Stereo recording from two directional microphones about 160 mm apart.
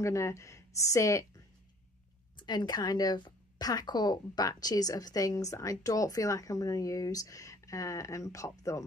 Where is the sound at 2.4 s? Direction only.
25° left (ahead or behind).